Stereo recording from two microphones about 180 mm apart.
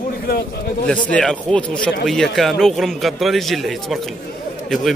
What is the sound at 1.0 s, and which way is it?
A man's voice, 5° left (ahead or behind).